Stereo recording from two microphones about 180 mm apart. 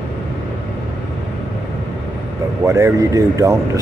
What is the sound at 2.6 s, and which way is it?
Speech, 15° right (ahead or behind).